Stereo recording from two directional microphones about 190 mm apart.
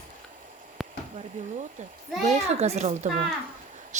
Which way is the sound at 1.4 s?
40° right (ahead or behind).